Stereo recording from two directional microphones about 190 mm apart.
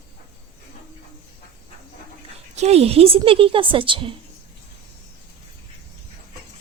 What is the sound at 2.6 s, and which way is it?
A woman's voice, 35° right (ahead or behind).